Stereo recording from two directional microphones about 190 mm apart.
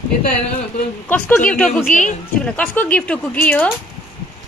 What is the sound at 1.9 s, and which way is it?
Speech, 40° left (ahead or behind).